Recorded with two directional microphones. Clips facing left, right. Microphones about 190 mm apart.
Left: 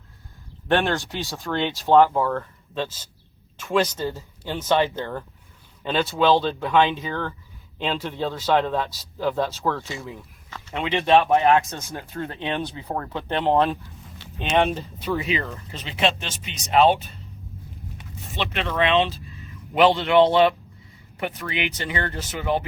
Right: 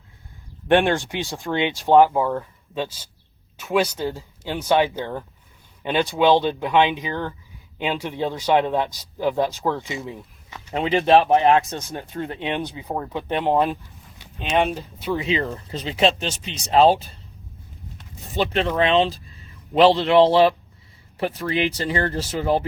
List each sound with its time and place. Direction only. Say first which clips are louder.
0.7 s speech: right 4 dB; 15° right (ahead or behind)
10.8 s speech: right 2 dB; 35° right (ahead or behind)
11.9 s speech: right 2 dB; 20° right (ahead or behind)
14.3 s speech: even; centre (ahead or behind)
15.2 s speech: right 3 dB; 30° right (ahead or behind)
18.3 s speech: right 4 dB; 35° right (ahead or behind)